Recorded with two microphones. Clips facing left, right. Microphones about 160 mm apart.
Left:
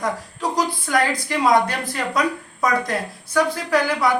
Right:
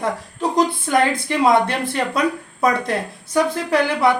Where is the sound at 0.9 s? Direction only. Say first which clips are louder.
Right 3 dB; 25° right (ahead or behind).